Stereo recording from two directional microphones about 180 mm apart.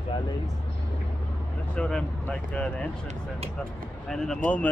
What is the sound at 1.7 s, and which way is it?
Speech, 5° left (ahead or behind).